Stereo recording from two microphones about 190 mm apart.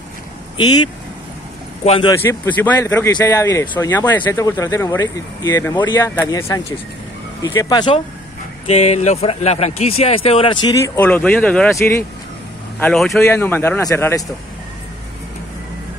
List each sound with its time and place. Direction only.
1.9 s speech: 30° left (ahead or behind)
2.2 s speech: 10° left (ahead or behind)
8.6 s speech: 35° left (ahead or behind)
11.0 s speech: 10° left (ahead or behind)